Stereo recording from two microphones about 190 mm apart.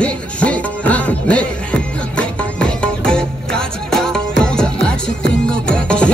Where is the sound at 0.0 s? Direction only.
5° left (ahead or behind).